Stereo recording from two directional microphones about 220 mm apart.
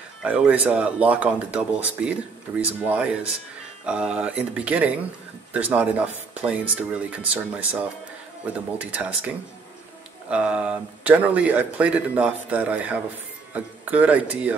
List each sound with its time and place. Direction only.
0.2 s speech: 5° right (ahead or behind)
10.3 s speech: 5° right (ahead or behind)